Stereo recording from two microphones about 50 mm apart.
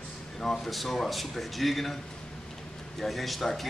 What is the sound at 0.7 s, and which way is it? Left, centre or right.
Speech, centre.